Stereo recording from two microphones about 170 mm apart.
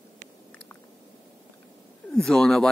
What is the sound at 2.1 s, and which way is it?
Speech, centre (ahead or behind).